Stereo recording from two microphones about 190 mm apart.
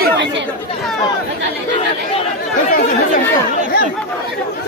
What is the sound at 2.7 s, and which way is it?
Chatter, 50° left (ahead or behind).